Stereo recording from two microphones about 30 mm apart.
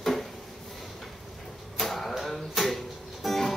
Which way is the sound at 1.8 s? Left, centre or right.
Centre.